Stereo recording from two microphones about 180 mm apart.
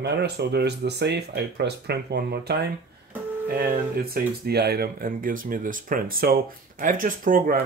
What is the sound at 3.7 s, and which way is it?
Speech, 55° right (ahead or behind).